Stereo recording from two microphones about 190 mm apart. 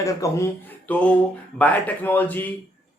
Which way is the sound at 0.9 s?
5° left (ahead or behind).